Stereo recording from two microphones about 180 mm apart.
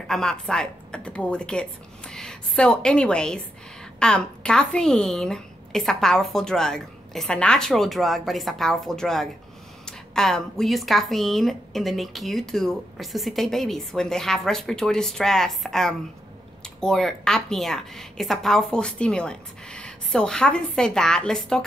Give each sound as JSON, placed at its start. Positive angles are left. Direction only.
{"t": 0.1, "sound": "speech", "side_deg": 5}